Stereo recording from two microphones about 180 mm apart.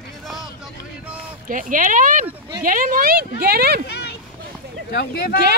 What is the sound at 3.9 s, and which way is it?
Speech, 65° left (ahead or behind).